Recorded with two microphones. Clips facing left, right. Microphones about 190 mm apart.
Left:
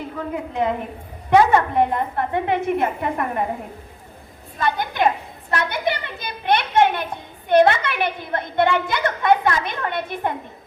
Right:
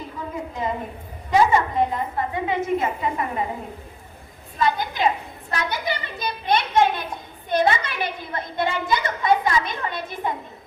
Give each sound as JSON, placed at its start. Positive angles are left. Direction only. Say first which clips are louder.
{"t": 0.2, "sound": "a woman's voice", "louder": "left 5 dB", "side_deg": 65}
{"t": 4.6, "sound": "a woman's voice", "louder": "left 1 dB", "side_deg": 55}